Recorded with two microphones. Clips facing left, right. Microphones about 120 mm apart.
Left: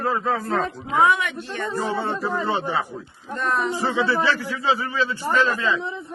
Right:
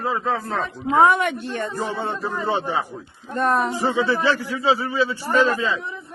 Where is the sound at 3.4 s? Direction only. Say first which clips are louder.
Right 4 dB; 50° right (ahead or behind).